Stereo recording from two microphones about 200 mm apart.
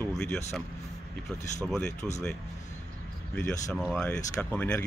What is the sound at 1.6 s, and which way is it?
Speech, 5° left (ahead or behind).